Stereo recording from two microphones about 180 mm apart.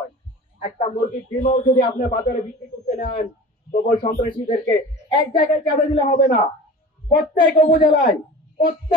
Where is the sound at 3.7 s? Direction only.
40° left (ahead or behind).